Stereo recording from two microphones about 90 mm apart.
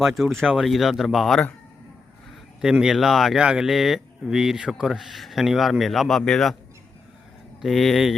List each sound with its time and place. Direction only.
0.0 s speech: centre (ahead or behind)
2.6 s speech: 5° right (ahead or behind)
7.6 s speech: centre (ahead or behind)